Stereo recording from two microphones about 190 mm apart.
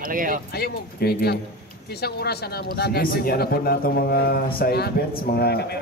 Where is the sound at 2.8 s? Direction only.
55° left (ahead or behind).